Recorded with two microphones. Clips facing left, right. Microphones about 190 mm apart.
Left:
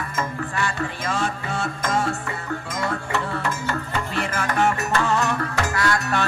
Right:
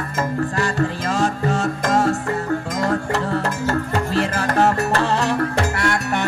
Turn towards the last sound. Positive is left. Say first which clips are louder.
# right 2 dB
turn(degrees=-25)  # may be behind; listen again after turning